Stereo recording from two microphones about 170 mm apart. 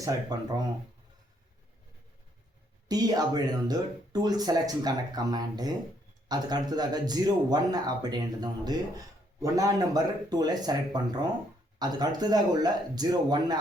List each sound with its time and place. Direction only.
0.0 s speech: 25° right (ahead or behind)
2.9 s speech: 25° right (ahead or behind)